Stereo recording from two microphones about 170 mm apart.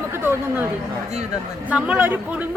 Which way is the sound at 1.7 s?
5° right (ahead or behind).